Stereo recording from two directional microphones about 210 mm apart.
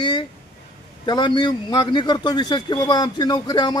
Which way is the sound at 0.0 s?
20° left (ahead or behind).